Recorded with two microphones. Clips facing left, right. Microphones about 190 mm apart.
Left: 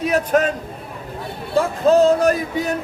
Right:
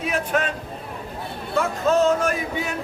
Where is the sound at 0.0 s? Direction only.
40° left (ahead or behind).